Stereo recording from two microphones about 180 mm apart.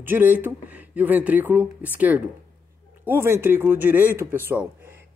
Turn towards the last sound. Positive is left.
turn(degrees=-10)  # may be behind; listen again after turning